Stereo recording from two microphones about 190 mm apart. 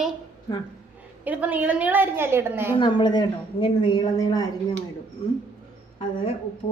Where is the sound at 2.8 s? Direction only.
25° left (ahead or behind).